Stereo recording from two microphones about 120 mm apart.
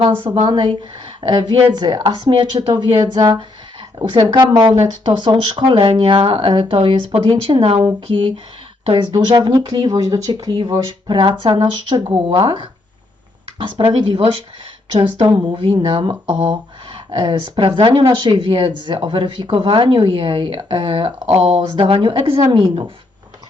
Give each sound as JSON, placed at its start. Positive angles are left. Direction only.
{"t": 0.4, "sound": "speech", "side_deg": -40}
{"t": 15.3, "sound": "speech", "side_deg": -40}
{"t": 21.2, "sound": "speech", "side_deg": -65}